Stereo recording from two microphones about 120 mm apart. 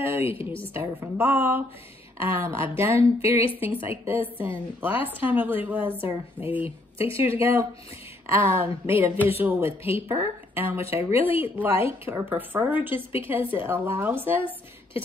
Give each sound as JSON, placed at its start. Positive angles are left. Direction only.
{"t": 0.0, "sound": "a sound", "side_deg": -20}
{"t": 0.3, "sound": "a woman's voice", "side_deg": 50}
{"t": 0.7, "sound": "a woman's voice", "side_deg": -20}